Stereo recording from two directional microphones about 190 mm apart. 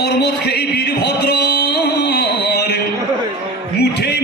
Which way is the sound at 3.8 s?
60° left (ahead or behind).